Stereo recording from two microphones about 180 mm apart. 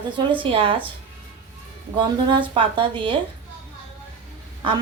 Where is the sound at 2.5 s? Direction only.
25° right (ahead or behind).